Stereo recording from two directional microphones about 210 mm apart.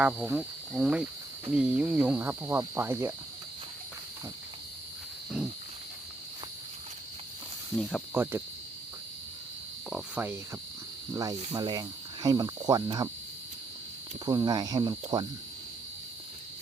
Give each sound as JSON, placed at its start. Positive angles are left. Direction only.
{"t": 0.0, "sound": "speech", "side_deg": -5}
{"t": 1.5, "sound": "cricket", "side_deg": -5}
{"t": 7.8, "sound": "speech", "side_deg": 5}
{"t": 8.1, "sound": "cricket", "side_deg": -10}
{"t": 9.9, "sound": "cricket", "side_deg": -10}
{"t": 14.3, "sound": "cricket", "side_deg": -20}